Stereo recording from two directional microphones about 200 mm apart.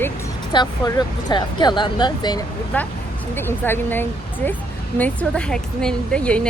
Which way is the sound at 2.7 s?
10° left (ahead or behind).